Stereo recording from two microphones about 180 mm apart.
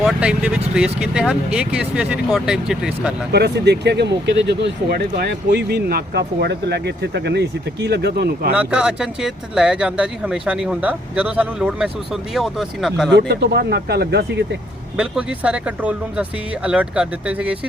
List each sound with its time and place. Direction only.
0.0 s speech: 5° right (ahead or behind)
3.3 s speech: 65° right (ahead or behind)
8.5 s speech: 5° right (ahead or behind)
13.1 s speech: 65° right (ahead or behind)
14.9 s speech: 5° right (ahead or behind)